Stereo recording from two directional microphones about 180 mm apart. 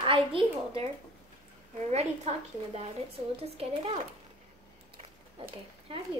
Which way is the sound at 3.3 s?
35° right (ahead or behind).